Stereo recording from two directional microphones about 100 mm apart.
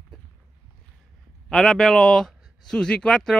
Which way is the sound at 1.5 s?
5° left (ahead or behind).